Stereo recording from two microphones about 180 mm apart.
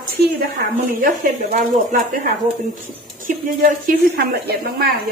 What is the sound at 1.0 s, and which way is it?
A woman's voice, 50° right (ahead or behind).